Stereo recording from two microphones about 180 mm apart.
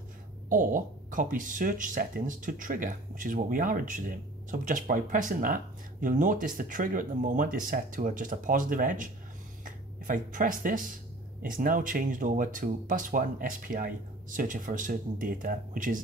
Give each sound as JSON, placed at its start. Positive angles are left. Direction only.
{"t": 0.5, "sound": "speech", "side_deg": -45}